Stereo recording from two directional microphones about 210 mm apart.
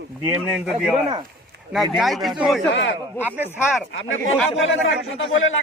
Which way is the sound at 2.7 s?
60° left (ahead or behind).